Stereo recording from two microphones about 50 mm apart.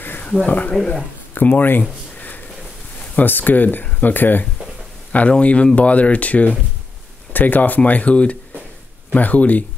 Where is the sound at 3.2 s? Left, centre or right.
Left.